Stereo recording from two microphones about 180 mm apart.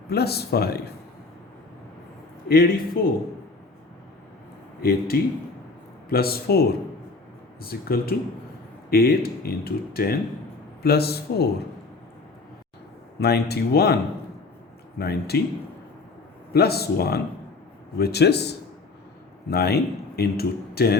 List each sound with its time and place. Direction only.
0.1 s speech: 60° left (ahead or behind)
2.5 s speech: 55° left (ahead or behind)
4.8 s speech: 55° left (ahead or behind)
13.1 s speech: 65° left (ahead or behind)
16.5 s speech: 60° left (ahead or behind)